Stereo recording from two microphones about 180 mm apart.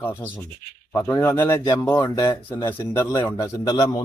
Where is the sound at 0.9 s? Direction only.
10° left (ahead or behind).